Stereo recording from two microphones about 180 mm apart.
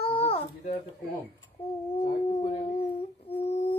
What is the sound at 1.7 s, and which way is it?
Dog, 30° left (ahead or behind).